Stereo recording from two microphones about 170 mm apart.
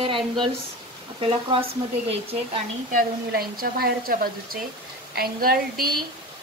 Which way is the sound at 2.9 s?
55° right (ahead or behind).